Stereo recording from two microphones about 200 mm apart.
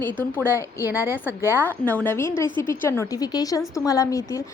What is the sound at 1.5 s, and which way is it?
A woman's voice, 10° left (ahead or behind).